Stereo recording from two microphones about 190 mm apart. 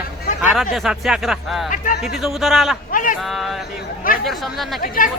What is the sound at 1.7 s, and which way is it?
Speech, 45° left (ahead or behind).